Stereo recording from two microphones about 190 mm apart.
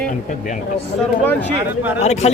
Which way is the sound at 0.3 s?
40° left (ahead or behind).